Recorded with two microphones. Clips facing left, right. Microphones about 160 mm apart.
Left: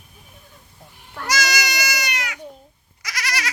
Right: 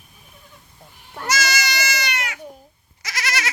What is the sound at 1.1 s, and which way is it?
Goat, 25° right (ahead or behind).